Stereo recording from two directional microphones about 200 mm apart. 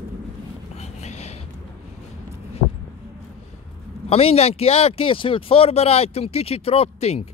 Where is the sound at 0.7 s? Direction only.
35° left (ahead or behind).